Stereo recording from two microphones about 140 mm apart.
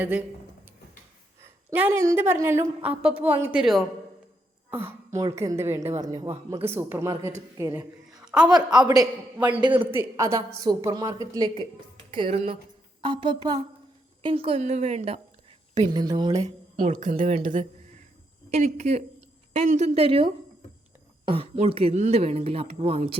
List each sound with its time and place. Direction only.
0.0 s a woman's voice: 10° right (ahead or behind)
1.7 s a woman's voice: 15° right (ahead or behind)
4.7 s a woman's voice: 15° right (ahead or behind)
8.2 s a sound: 5° right (ahead or behind)
8.4 s a man's voice: 30° right (ahead or behind)
9.9 s a woman's voice: 20° right (ahead or behind); by 15.2 s 50° right (ahead or behind)
15.7 s a man's voice: 30° right (ahead or behind)
16.9 s speech: 70° right (ahead or behind)
18.5 s speech: 55° right (ahead or behind)
19.9 s a man's voice: 40° right (ahead or behind)